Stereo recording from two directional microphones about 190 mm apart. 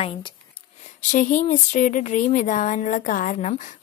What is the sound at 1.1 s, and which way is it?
Speech, 40° left (ahead or behind).